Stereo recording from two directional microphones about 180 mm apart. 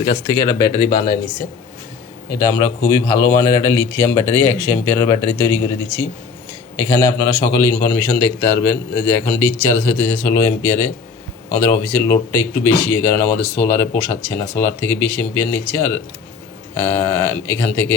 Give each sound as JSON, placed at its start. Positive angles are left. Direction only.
{"t": 0.0, "sound": "speech", "side_deg": 25}